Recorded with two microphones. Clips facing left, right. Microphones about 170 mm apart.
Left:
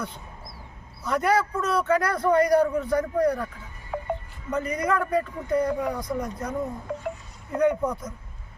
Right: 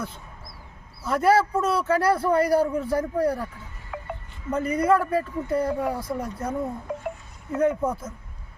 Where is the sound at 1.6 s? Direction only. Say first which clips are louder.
Right 2 dB; 5° right (ahead or behind).